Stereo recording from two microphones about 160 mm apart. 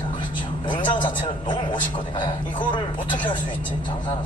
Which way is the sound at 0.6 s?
30° left (ahead or behind).